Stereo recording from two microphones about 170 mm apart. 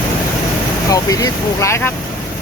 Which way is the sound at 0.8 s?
20° left (ahead or behind).